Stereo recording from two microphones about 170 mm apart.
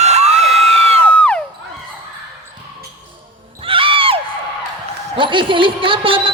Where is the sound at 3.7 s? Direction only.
30° right (ahead or behind).